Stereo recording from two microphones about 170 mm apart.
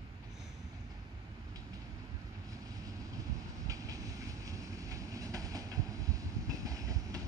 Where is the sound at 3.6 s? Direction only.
20° right (ahead or behind).